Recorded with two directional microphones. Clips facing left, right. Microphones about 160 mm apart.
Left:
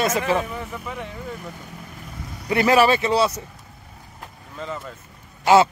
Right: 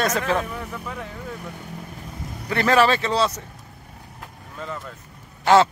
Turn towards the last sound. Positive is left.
turn(degrees=10)  # may be behind; listen again after turning